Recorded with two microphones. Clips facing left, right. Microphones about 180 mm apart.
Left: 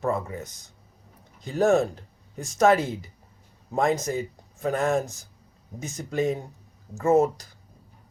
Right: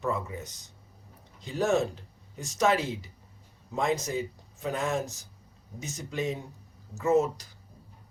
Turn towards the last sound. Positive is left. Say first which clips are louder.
# left 4 dB
turn(degrees=55)  # may be behind; listen again after turning